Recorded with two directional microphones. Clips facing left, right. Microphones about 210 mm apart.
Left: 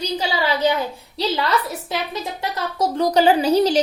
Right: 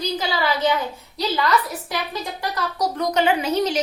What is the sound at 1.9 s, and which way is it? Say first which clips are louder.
A child's voice: left 2 dB; 25° left (ahead or behind).